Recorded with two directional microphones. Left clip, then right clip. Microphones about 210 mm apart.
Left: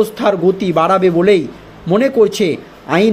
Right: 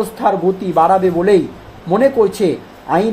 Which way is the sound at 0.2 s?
45° left (ahead or behind).